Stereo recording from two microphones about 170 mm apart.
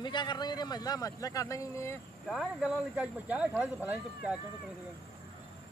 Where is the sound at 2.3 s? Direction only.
Centre (ahead or behind).